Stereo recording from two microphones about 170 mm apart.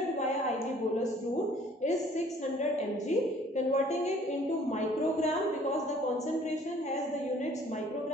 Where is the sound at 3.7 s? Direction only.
40° left (ahead or behind).